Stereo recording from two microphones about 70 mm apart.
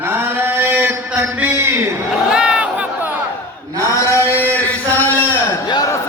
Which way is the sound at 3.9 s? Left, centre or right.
Left.